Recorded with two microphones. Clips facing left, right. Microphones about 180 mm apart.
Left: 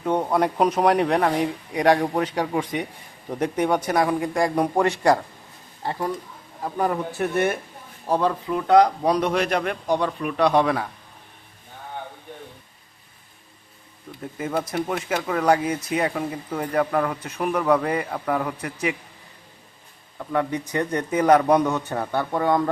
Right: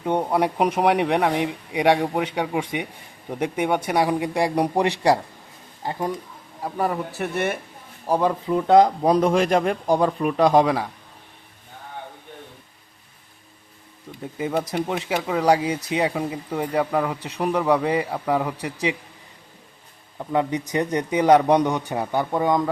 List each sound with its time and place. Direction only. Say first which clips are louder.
0.2 s speech: even; 10° right (ahead or behind)
2.0 s a man's voice: even; centre (ahead or behind)
6.6 s a man's voice: left 1 dB; 5° right (ahead or behind)
8.1 s speech: right 1 dB; 15° right (ahead or behind)
8.4 s speech: right 1 dB; 30° right (ahead or behind)
9.8 s speech: right 3 dB; 40° right (ahead or behind)
10.6 s speech: right 2 dB; 15° right (ahead or behind)
14.3 s speech: right 1 dB; 20° right (ahead or behind)
20.1 s speech: right 2 dB; 20° right (ahead or behind)